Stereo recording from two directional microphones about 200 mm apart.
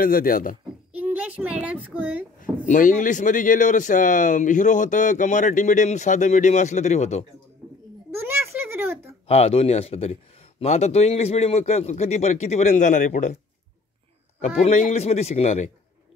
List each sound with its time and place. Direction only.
0.0 s speech: 45° left (ahead or behind)
0.9 s a child's voice: 10° right (ahead or behind)
2.4 s a man's voice: 40° left (ahead or behind)
8.1 s a sound: 10° right (ahead or behind)
9.3 s a man's voice: 30° left (ahead or behind)
14.6 s a man's voice: 35° left (ahead or behind)